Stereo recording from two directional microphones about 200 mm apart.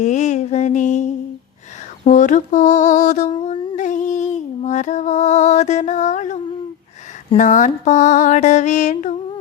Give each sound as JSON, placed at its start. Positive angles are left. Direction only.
{"t": 0.0, "sound": "mantra", "side_deg": 35}
{"t": 2.0, "sound": "mantra", "side_deg": 40}
{"t": 3.3, "sound": "music", "side_deg": 30}
{"t": 7.3, "sound": "mantra", "side_deg": 40}